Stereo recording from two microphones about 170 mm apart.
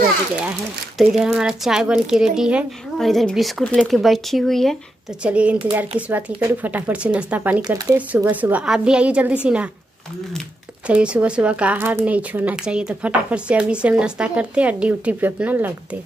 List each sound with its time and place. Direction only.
0.9 s speech: 5° right (ahead or behind)
7.6 s speech: 20° right (ahead or behind)
8.1 s speech: 10° right (ahead or behind)
10.9 s speech: 5° right (ahead or behind)